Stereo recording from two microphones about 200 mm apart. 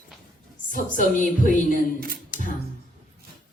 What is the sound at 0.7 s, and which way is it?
A woman's voice, 40° left (ahead or behind).